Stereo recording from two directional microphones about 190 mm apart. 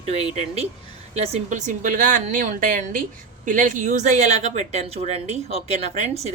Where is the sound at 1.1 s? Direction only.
35° right (ahead or behind).